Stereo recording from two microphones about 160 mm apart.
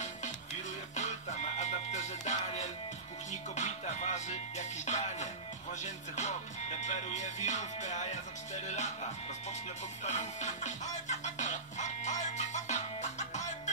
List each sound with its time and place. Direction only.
0.9 s music: 45° left (ahead or behind)
8.6 s speech: 45° left (ahead or behind)
10.0 s music: 45° left (ahead or behind)